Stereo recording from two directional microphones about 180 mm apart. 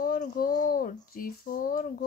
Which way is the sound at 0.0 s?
50° left (ahead or behind).